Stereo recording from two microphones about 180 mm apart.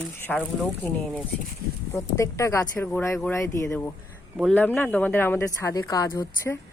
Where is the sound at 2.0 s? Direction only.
15° left (ahead or behind).